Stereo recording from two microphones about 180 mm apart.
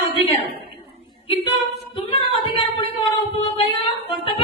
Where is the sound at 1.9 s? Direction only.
30° left (ahead or behind).